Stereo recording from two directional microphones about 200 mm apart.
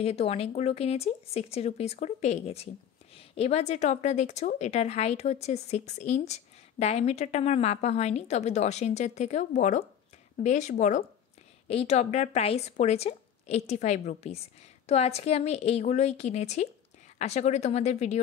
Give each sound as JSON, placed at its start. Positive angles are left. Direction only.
{"t": 0.0, "sound": "a woman's voice", "side_deg": 30}